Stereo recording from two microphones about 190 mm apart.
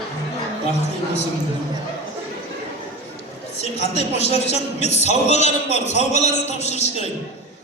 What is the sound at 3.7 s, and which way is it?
A man's voice, 35° left (ahead or behind).